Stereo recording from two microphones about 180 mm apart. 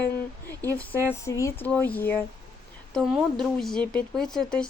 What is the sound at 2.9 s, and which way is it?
Speech, 5° right (ahead or behind).